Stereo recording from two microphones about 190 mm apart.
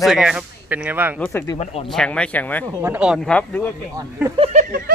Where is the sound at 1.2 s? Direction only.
10° left (ahead or behind).